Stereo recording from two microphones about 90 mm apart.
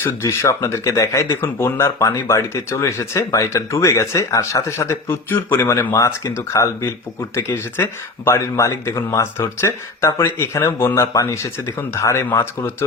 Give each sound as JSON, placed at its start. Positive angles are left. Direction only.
{"t": 0.0, "sound": "speech", "side_deg": 30}